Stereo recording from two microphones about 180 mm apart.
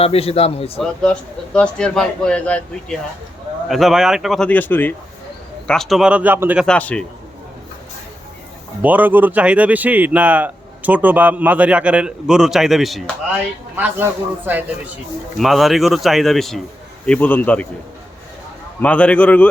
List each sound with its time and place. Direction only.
0.0 s a man's voice: 30° left (ahead or behind)
0.8 s a man's voice: 5° left (ahead or behind); by 6.7 s 10° right (ahead or behind)
6.7 s a man's voice: 5° left (ahead or behind)
8.8 s speech: 10° right (ahead or behind)
13.7 s a man's voice: 10° right (ahead or behind); by 17.7 s 10° left (ahead or behind)
18.8 s a man's voice: 5° left (ahead or behind)